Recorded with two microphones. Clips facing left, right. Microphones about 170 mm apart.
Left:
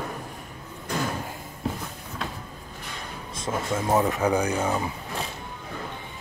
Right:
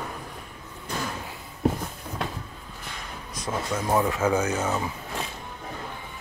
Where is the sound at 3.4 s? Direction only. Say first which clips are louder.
Left 1 dB; 25° left (ahead or behind).